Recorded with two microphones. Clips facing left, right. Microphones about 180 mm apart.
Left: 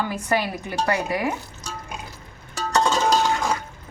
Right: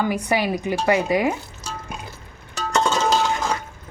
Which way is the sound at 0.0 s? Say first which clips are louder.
Right 3 dB; 15° right (ahead or behind).